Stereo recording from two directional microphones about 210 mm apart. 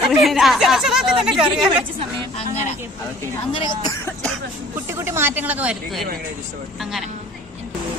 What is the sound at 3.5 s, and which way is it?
Speech, 25° left (ahead or behind).